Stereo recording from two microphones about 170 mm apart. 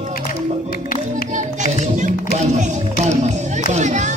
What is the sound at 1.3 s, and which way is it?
Music, 45° right (ahead or behind).